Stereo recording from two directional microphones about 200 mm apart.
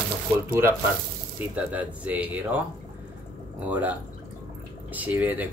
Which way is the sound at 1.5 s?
5° right (ahead or behind).